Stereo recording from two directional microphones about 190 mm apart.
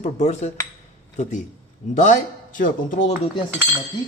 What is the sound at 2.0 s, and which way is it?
Speech, 45° left (ahead or behind).